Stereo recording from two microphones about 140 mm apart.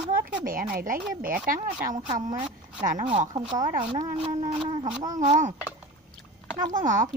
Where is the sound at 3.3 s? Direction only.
30° right (ahead or behind).